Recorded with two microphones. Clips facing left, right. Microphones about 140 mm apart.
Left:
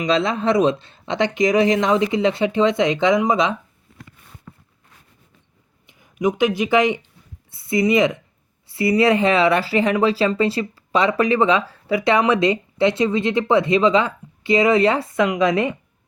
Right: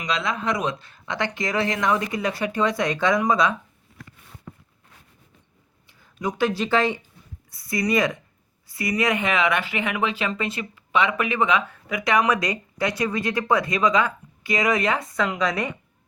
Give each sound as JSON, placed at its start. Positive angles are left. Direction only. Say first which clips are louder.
{"t": 0.0, "sound": "speech", "louder": "left 7 dB", "side_deg": 30}
{"t": 5.8, "sound": "speech", "louder": "left 8 dB", "side_deg": 20}
{"t": 15.2, "sound": "a woman's voice", "louder": "left 8 dB", "side_deg": 15}